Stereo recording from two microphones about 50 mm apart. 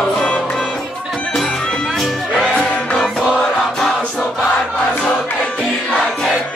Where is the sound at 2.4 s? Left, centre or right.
Centre.